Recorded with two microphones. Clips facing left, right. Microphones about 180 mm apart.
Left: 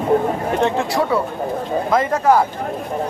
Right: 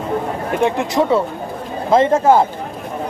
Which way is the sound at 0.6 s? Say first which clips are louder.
Right 3 dB; 20° right (ahead or behind).